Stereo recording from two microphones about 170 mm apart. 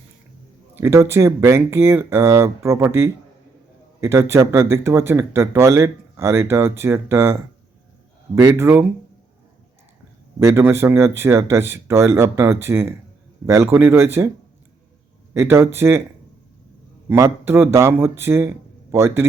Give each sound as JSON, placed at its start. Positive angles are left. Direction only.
{"t": 0.8, "sound": "speech", "side_deg": -15}
{"t": 8.4, "sound": "speech", "side_deg": -15}
{"t": 10.4, "sound": "speech", "side_deg": -15}
{"t": 15.3, "sound": "speech", "side_deg": -15}
{"t": 17.1, "sound": "speech", "side_deg": -15}